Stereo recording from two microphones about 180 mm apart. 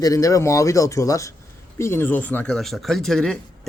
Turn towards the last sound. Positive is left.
turn(degrees=0)  # may be behind; listen again after turning